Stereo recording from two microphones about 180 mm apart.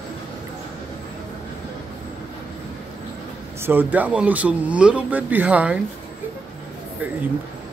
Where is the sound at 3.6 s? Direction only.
10° right (ahead or behind).